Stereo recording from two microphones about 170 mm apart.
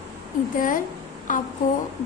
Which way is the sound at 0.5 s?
50° left (ahead or behind).